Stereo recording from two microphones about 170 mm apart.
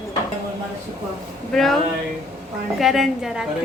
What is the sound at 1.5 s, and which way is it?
Speech, centre (ahead or behind).